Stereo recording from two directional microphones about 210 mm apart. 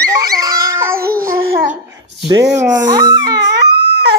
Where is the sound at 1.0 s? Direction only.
45° right (ahead or behind).